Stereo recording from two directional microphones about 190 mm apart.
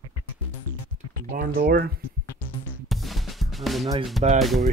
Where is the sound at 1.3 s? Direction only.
50° right (ahead or behind).